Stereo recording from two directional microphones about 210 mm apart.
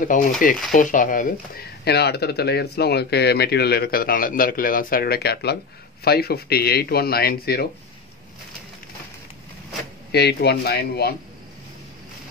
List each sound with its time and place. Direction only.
0.0 s speech: 40° left (ahead or behind)
10.1 s speech: 50° left (ahead or behind)